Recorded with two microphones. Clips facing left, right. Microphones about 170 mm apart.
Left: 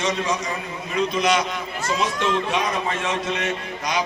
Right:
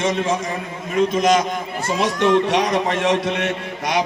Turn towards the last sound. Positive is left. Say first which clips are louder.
# right 4 dB
turn(degrees=-60)  # may be behind; listen again after turning